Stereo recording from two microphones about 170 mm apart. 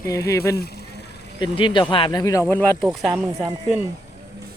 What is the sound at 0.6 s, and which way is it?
Speech, 70° left (ahead or behind).